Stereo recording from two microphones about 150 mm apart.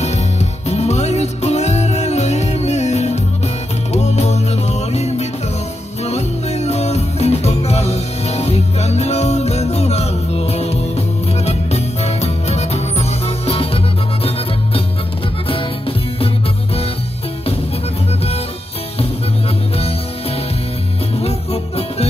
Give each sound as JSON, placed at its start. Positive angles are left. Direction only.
{"t": 0.0, "sound": "music", "side_deg": 50}
{"t": 21.2, "sound": "music", "side_deg": 45}